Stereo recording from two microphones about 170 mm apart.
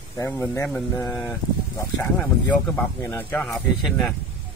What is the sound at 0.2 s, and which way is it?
Speech, 15° left (ahead or behind).